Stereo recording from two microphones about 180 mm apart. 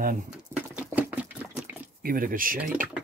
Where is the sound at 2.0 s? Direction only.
50° right (ahead or behind).